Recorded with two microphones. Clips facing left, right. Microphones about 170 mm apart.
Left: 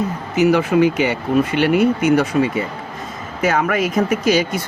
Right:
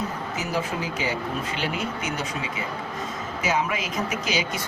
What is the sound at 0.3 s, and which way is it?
Speech, 70° left (ahead or behind).